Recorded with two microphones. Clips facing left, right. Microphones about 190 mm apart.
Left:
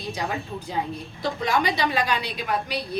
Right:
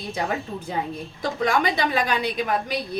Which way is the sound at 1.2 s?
50° right (ahead or behind).